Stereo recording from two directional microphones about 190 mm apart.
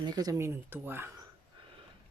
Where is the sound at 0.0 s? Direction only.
20° right (ahead or behind).